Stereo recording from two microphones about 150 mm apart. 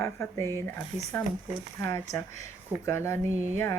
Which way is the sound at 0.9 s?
10° right (ahead or behind).